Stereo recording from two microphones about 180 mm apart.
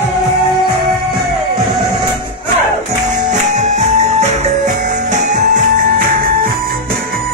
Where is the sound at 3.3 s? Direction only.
40° right (ahead or behind).